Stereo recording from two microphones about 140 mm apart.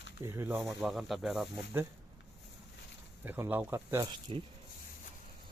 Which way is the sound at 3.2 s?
15° right (ahead or behind).